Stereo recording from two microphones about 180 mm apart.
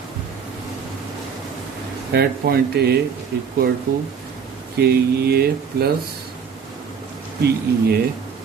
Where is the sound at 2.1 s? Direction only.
65° right (ahead or behind).